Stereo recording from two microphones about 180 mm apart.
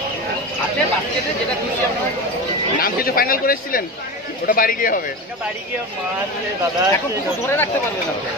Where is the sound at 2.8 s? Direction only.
55° left (ahead or behind).